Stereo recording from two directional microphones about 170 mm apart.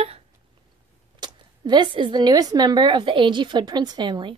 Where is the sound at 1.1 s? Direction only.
25° right (ahead or behind).